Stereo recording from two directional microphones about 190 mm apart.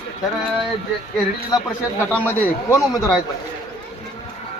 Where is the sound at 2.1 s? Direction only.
10° left (ahead or behind).